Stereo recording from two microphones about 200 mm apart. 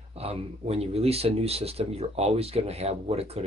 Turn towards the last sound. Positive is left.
turn(degrees=-30)  # may be behind; listen again after turning